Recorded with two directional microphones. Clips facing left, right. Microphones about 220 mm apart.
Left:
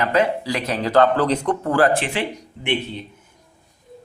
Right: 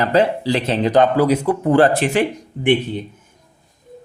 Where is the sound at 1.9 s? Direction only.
45° right (ahead or behind).